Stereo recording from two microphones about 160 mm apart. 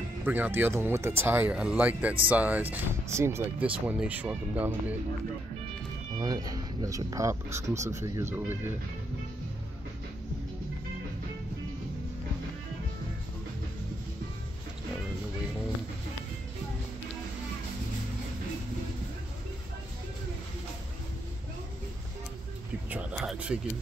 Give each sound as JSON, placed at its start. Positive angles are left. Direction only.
{"t": 0.2, "sound": "speech", "side_deg": -10}
{"t": 6.1, "sound": "speech", "side_deg": -25}
{"t": 22.8, "sound": "a sound", "side_deg": -5}